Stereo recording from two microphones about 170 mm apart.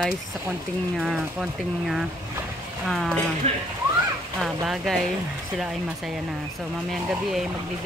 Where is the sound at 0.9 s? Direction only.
5° right (ahead or behind).